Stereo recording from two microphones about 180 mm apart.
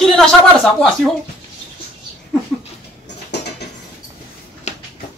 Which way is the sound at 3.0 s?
70° left (ahead or behind).